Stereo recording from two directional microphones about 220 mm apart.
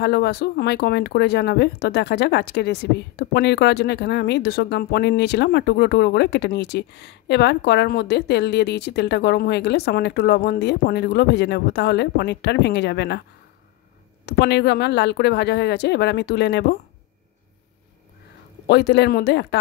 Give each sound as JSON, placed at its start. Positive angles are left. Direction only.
{"t": 0.0, "sound": "speech", "side_deg": 50}
{"t": 14.2, "sound": "speech", "side_deg": 50}
{"t": 18.7, "sound": "speech", "side_deg": 50}